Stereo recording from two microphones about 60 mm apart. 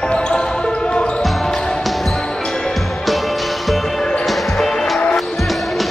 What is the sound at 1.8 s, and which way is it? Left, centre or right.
Basketball bounce, centre.